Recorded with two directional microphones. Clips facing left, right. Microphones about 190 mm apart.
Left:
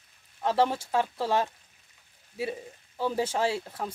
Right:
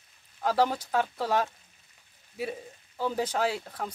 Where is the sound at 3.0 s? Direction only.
Centre (ahead or behind).